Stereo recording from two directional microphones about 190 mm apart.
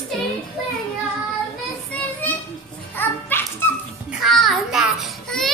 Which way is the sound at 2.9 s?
10° left (ahead or behind).